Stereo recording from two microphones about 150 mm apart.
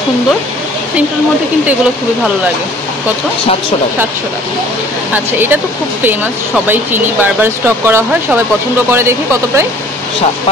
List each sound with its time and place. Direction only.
5.1 s speech: 15° right (ahead or behind)